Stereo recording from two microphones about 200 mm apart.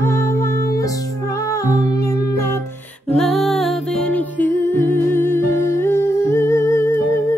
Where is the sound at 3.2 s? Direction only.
Centre (ahead or behind).